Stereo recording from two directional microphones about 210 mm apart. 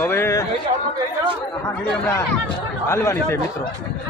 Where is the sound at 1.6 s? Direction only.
15° left (ahead or behind).